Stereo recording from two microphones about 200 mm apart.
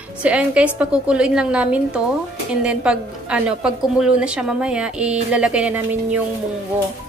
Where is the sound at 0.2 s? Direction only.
5° right (ahead or behind).